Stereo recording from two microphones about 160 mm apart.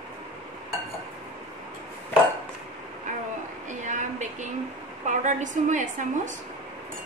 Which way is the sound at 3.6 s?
50° right (ahead or behind).